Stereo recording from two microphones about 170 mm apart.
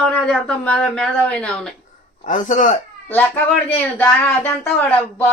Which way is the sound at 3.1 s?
10° left (ahead or behind).